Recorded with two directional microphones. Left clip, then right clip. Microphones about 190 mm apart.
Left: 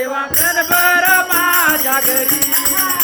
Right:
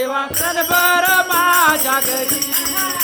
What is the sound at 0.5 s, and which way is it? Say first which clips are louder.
Jingle bell: left 1 dB; 15° right (ahead or behind).